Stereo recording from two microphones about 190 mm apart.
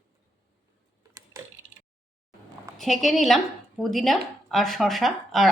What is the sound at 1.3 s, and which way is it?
Tick-tock, 15° right (ahead or behind).